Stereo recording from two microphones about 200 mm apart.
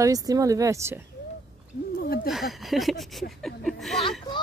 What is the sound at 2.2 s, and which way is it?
Speech, centre (ahead or behind).